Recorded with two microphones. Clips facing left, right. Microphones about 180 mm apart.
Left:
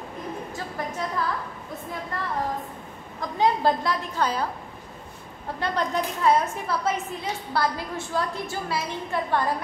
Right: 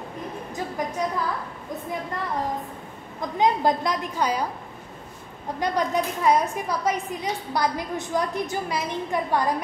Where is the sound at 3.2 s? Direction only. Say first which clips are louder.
Right 1 dB; 20° right (ahead or behind).